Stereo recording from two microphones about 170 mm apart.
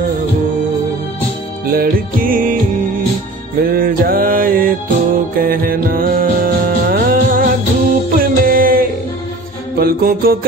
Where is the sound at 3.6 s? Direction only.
60° right (ahead or behind).